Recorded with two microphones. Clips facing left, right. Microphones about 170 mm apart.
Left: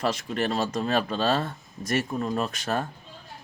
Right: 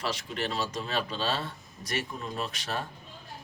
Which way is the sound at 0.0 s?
50° left (ahead or behind).